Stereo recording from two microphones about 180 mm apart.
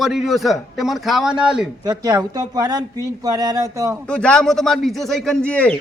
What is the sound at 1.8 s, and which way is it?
Speech, 20° right (ahead or behind).